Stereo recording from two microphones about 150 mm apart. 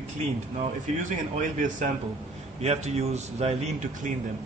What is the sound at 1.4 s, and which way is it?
Speech, 55° right (ahead or behind).